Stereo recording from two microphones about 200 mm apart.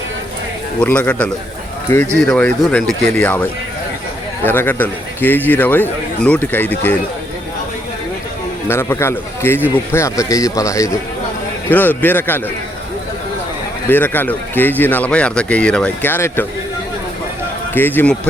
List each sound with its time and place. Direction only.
0.8 s speech: 5° left (ahead or behind)
8.6 s speech: 10° left (ahead or behind)
13.9 s speech: 10° left (ahead or behind)
17.7 s speech: 10° left (ahead or behind)